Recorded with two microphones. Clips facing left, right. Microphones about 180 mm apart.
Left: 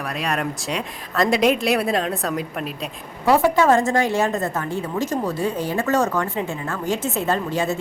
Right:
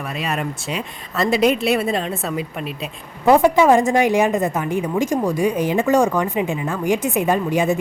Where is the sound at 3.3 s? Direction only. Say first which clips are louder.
Right 3 dB; 15° right (ahead or behind).